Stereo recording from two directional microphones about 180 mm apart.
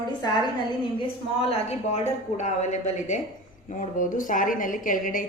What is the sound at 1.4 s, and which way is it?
A woman's voice, 35° left (ahead or behind).